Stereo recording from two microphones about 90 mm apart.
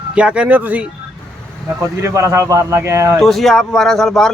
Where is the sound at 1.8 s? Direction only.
30° right (ahead or behind).